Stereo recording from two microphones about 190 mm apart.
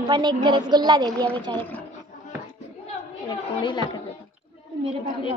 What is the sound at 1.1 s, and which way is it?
Speech, 5° left (ahead or behind).